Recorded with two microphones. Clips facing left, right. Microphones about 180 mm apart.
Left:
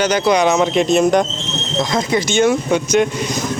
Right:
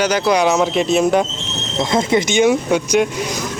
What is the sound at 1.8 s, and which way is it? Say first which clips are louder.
Speech: right 2 dB; 25° right (ahead or behind).